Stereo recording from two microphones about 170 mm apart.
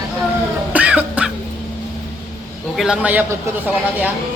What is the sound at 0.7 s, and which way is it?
Music, 10° right (ahead or behind).